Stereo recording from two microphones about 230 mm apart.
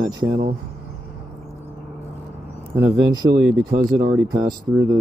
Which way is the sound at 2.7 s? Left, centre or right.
Centre.